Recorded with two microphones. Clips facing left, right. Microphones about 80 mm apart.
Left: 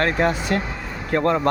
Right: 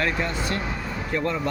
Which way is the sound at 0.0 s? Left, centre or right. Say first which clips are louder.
Left 5 dB; left.